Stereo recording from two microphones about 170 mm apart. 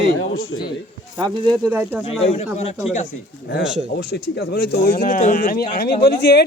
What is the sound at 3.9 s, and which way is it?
Speech, 75° left (ahead or behind).